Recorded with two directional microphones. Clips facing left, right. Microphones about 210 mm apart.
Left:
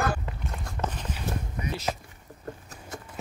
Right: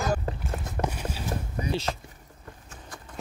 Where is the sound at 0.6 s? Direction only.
20° right (ahead or behind).